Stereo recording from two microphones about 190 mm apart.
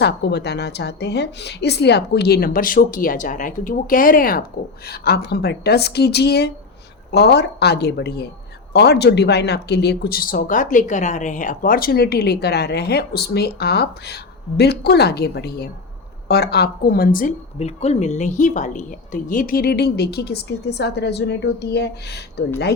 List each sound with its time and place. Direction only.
0.0 s a woman's voice: 65° left (ahead or behind)